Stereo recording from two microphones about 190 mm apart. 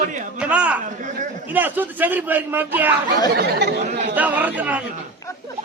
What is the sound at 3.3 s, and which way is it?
Speech, 60° right (ahead or behind).